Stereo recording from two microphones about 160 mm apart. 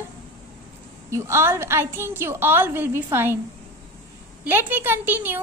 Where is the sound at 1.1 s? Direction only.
15° right (ahead or behind).